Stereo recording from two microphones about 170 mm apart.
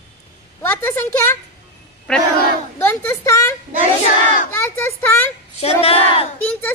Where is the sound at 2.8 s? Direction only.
15° left (ahead or behind).